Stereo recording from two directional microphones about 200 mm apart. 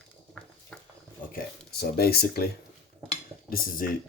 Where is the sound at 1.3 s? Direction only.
50° left (ahead or behind).